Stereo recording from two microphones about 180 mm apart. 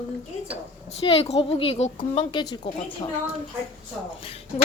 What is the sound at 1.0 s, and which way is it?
A woman's voice, 35° left (ahead or behind).